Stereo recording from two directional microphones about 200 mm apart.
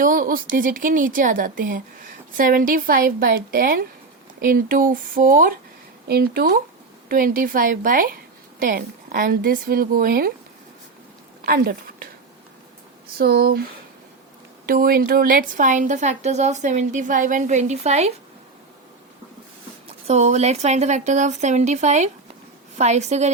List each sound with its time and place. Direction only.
0.0 s a woman's voice: 45° right (ahead or behind)
11.4 s a woman's voice: 50° right (ahead or behind)
13.1 s a woman's voice: 50° right (ahead or behind)
14.7 s a woman's voice: 45° right (ahead or behind)
19.9 s a woman's voice: 35° right (ahead or behind)